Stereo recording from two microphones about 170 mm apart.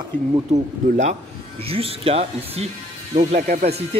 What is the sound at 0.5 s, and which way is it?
Speech, 45° right (ahead or behind).